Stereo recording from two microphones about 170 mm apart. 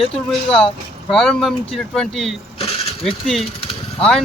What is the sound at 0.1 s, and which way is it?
Speech, 5° left (ahead or behind).